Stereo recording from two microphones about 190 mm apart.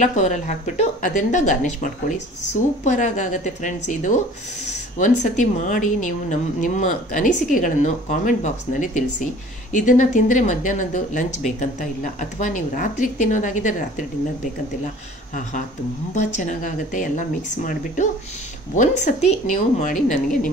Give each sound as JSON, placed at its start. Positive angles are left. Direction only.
{"t": 0.0, "sound": "speech", "side_deg": 40}
{"t": 16.2, "sound": "speech", "side_deg": 40}
{"t": 18.8, "sound": "speech", "side_deg": 40}